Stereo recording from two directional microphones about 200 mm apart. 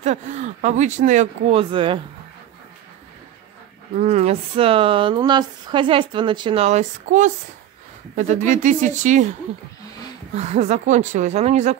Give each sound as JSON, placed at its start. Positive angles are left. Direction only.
{"t": 0.0, "sound": "speech", "side_deg": -35}
{"t": 3.9, "sound": "speech", "side_deg": -35}
{"t": 10.3, "sound": "speech", "side_deg": -35}